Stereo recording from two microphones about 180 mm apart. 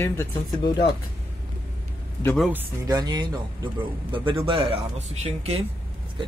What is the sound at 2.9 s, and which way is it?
Speech, 20° right (ahead or behind).